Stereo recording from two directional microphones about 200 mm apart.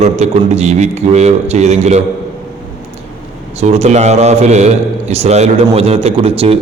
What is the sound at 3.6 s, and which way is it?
A man's voice, 30° right (ahead or behind).